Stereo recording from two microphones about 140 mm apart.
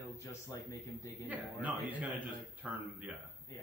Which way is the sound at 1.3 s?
10° right (ahead or behind).